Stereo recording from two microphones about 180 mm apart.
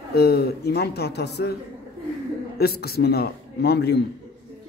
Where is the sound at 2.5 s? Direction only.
60° left (ahead or behind).